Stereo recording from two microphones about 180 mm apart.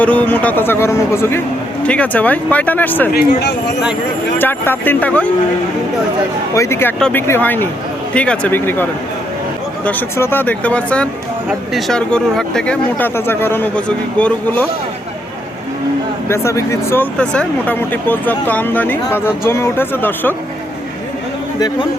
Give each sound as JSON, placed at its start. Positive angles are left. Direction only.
{"t": 0.0, "sound": "speech", "side_deg": 10}
{"t": 3.1, "sound": "speech", "side_deg": 55}
{"t": 4.4, "sound": "speech", "side_deg": 10}
{"t": 6.5, "sound": "speech", "side_deg": 15}
{"t": 16.3, "sound": "speech", "side_deg": 15}